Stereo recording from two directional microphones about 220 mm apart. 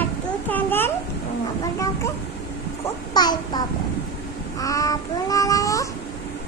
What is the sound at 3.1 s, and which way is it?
Child singing, 20° left (ahead or behind).